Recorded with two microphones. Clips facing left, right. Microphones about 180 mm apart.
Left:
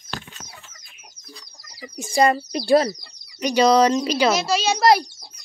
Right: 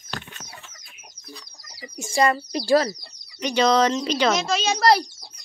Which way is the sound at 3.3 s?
10° left (ahead or behind).